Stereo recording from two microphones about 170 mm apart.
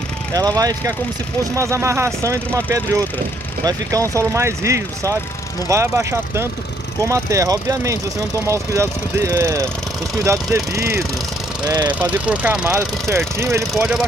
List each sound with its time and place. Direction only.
0.3 s speech: 25° right (ahead or behind)
11.9 s speech: 10° right (ahead or behind)